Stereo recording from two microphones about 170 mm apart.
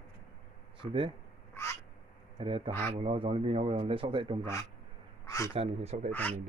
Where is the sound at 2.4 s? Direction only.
30° right (ahead or behind).